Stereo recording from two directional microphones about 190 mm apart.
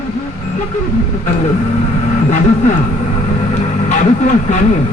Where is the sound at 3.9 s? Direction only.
40° left (ahead or behind).